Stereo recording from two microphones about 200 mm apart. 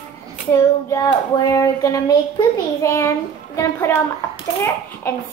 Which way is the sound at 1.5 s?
15° left (ahead or behind).